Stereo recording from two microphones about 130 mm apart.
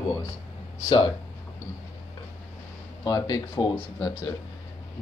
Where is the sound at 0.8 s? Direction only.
40° left (ahead or behind).